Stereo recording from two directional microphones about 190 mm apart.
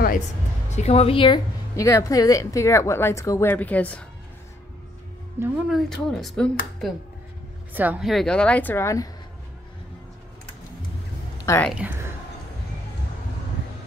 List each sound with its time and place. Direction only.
0.7 s a woman's voice: 35° left (ahead or behind); by 4.0 s 10° left (ahead or behind)
5.4 s speech: 10° right (ahead or behind)
5.7 s a woman's voice: centre (ahead or behind)
7.7 s a woman's voice: 10° right (ahead or behind); by 9.1 s 15° left (ahead or behind)
11.4 s speech: 10° left (ahead or behind)